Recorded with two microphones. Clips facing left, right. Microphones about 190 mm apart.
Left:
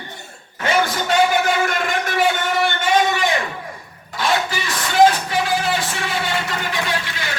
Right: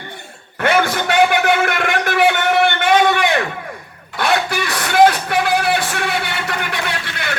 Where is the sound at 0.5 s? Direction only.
60° right (ahead or behind).